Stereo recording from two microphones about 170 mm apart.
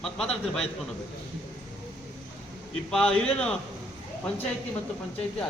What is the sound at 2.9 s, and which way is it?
Speech, 5° left (ahead or behind).